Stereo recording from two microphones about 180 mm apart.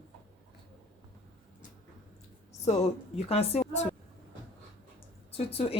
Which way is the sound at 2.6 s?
35° left (ahead or behind).